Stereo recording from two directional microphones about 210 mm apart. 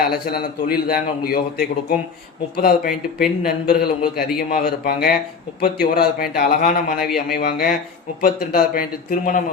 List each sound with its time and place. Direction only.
0.1 s a man's voice: 45° left (ahead or behind)
7.0 s speech: centre (ahead or behind)
7.3 s a man's voice: 45° left (ahead or behind)